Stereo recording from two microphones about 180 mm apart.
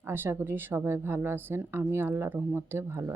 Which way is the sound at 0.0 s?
10° right (ahead or behind).